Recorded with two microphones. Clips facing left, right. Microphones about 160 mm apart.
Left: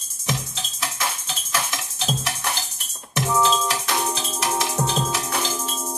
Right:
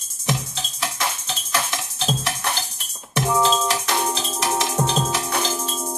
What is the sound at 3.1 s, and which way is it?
Music, 15° right (ahead or behind).